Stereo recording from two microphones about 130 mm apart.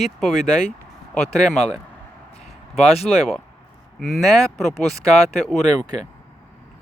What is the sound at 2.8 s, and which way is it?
Speech, 50° left (ahead or behind).